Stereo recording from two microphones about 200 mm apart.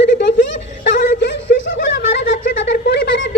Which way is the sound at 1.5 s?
50° left (ahead or behind).